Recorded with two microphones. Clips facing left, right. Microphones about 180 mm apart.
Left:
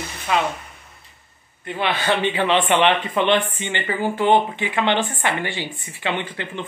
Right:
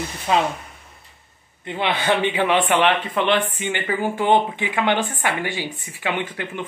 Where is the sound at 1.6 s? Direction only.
20° right (ahead or behind).